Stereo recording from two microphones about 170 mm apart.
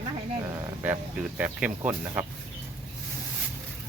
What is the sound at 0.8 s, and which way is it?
Speech, 10° right (ahead or behind).